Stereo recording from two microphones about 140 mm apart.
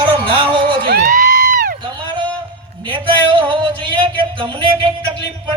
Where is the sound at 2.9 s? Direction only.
35° right (ahead or behind).